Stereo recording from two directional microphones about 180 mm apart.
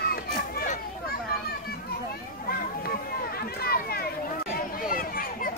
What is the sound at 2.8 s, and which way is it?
Run, 55° left (ahead or behind).